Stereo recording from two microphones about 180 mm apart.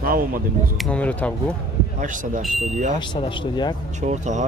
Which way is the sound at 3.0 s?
25° left (ahead or behind).